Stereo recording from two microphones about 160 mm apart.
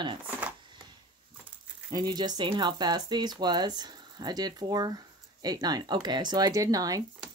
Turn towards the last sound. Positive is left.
turn(degrees=-20)  # may be behind; listen again after turning